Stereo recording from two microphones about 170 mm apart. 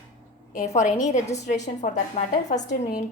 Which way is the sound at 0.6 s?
45° left (ahead or behind).